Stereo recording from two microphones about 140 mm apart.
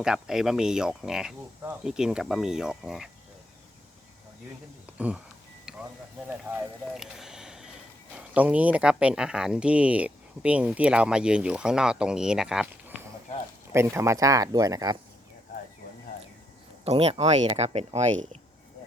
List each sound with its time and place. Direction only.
0.0 s speech: 5° right (ahead or behind)
4.9 s speech: 10° right (ahead or behind)
6.2 s speech: 15° right (ahead or behind)
6.9 s a sound: 5° right (ahead or behind)
8.1 s speech: 10° right (ahead or behind)
13.7 s speech: 20° right (ahead or behind)
16.8 s speech: 45° right (ahead or behind)